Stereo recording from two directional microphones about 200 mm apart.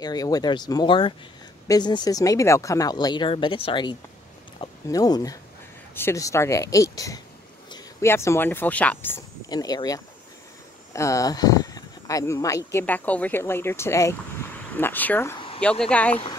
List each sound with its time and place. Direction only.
0.0 s speech: 20° left (ahead or behind)